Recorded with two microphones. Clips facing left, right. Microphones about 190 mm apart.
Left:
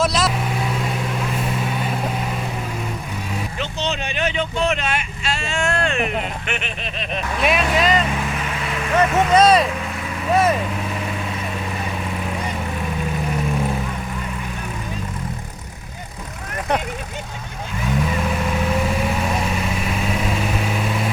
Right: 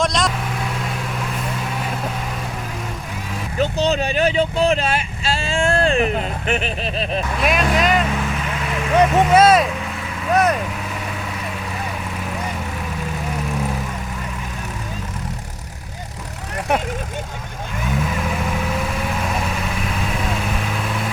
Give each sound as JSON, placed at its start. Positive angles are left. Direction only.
{"t": 0.0, "sound": "vehicle", "side_deg": 5}
{"t": 3.6, "sound": "vehicle", "side_deg": -40}
{"t": 6.5, "sound": "a sound", "side_deg": -35}
{"t": 7.4, "sound": "speech", "side_deg": 0}
{"t": 10.3, "sound": "vehicle", "side_deg": 5}